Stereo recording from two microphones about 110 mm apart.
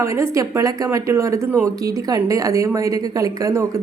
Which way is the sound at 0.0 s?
25° right (ahead or behind).